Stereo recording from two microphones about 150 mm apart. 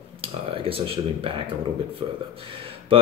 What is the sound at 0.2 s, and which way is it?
Speech, 40° right (ahead or behind).